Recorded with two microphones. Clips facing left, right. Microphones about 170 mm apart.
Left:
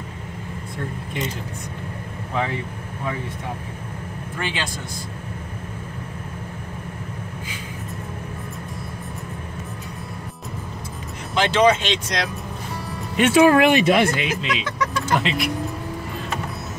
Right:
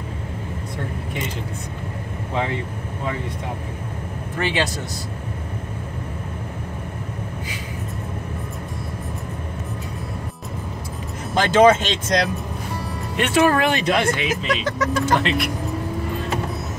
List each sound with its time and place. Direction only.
11.3 s speech: 50° right (ahead or behind)
13.1 s speech: 5° left (ahead or behind)
14.5 s speech: 45° right (ahead or behind)
15.1 s speech: centre (ahead or behind)